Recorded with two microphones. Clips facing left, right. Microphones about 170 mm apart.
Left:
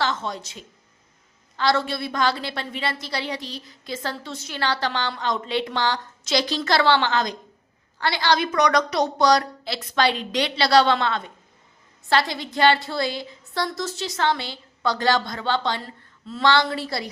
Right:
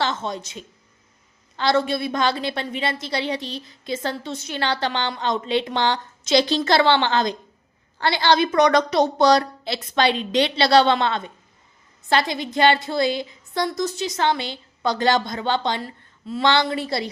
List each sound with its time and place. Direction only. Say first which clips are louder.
0.0 s a woman's voice: right 1 dB; 25° right (ahead or behind)